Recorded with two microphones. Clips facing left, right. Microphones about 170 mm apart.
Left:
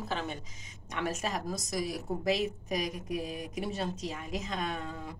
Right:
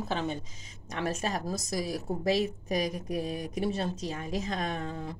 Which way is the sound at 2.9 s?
35° right (ahead or behind).